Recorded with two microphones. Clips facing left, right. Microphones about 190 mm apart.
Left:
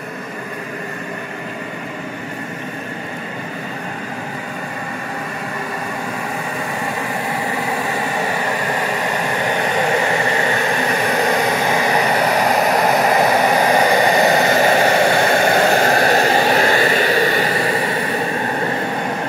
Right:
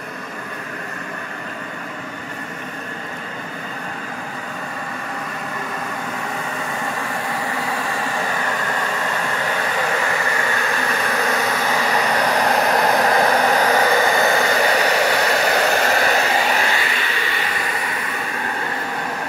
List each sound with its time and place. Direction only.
7.7 s vehicle: 15° left (ahead or behind)